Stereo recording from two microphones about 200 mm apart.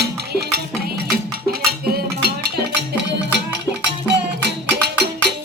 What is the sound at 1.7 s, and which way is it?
Cutlery, 55° right (ahead or behind).